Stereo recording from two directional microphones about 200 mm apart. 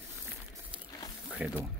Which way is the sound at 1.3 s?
5° right (ahead or behind).